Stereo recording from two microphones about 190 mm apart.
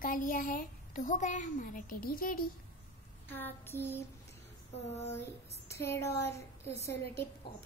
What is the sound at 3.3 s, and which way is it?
Speech, 10° left (ahead or behind).